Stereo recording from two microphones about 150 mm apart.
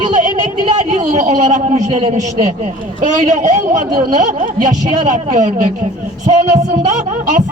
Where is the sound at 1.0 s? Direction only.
60° right (ahead or behind).